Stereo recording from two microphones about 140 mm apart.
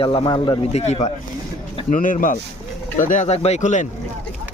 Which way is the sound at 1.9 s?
65° left (ahead or behind).